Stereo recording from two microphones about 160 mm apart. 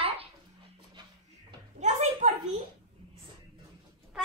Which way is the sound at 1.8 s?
45° right (ahead or behind).